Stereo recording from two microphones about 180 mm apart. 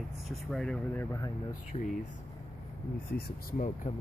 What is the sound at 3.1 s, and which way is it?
Speech, 55° left (ahead or behind).